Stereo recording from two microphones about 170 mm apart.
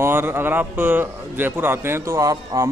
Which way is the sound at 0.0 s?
15° right (ahead or behind).